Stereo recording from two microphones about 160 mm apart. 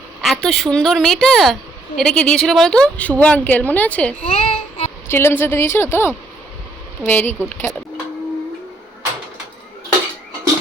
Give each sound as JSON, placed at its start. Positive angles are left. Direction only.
{"t": 0.2, "sound": "a woman's voice", "side_deg": 0}
{"t": 4.3, "sound": "a child's voice", "side_deg": 35}
{"t": 5.0, "sound": "a woman's voice", "side_deg": 15}
{"t": 7.7, "sound": "a woman's voice", "side_deg": 0}